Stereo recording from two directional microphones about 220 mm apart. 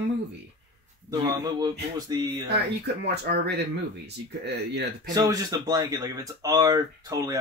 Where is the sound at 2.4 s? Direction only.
50° right (ahead or behind).